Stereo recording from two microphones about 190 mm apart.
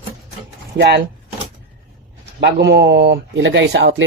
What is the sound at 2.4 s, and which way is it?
Speech, 60° right (ahead or behind).